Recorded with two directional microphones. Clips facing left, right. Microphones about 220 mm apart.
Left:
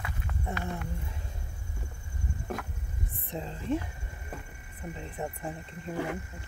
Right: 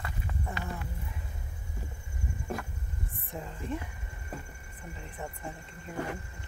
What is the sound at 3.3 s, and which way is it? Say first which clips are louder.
Speech: left 5 dB; 25° left (ahead or behind).